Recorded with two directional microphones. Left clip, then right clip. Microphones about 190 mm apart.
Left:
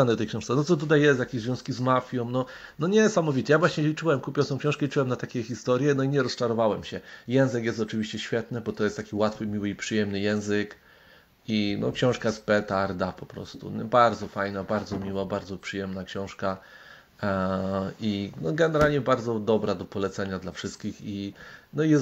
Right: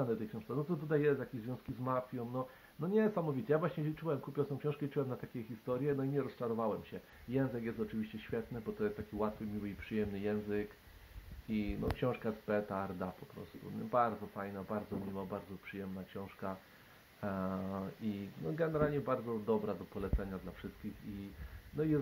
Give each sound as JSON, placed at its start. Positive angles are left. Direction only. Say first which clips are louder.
{"t": 0.0, "sound": "speech", "louder": "left 14 dB", "side_deg": 35}